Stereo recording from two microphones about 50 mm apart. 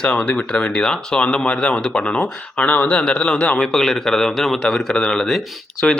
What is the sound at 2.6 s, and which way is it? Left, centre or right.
Speech, left.